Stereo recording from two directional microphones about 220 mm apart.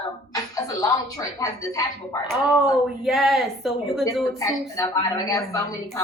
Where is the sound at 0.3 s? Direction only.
15° left (ahead or behind).